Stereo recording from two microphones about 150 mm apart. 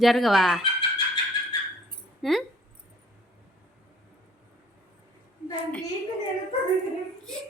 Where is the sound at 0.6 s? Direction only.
35° left (ahead or behind).